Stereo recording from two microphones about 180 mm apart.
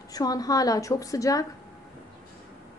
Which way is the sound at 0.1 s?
20° left (ahead or behind).